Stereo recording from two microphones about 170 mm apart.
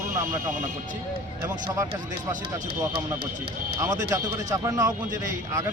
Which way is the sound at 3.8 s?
20° right (ahead or behind).